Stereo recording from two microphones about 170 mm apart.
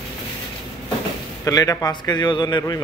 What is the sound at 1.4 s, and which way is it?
A man's voice, 20° left (ahead or behind).